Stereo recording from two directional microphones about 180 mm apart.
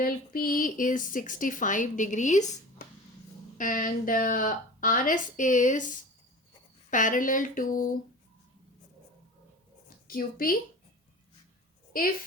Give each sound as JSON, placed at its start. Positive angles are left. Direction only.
{"t": 0.0, "sound": "a woman's voice", "side_deg": 50}
{"t": 6.9, "sound": "a woman's voice", "side_deg": 45}
{"t": 10.1, "sound": "a woman's voice", "side_deg": 50}
{"t": 11.9, "sound": "a woman's voice", "side_deg": 50}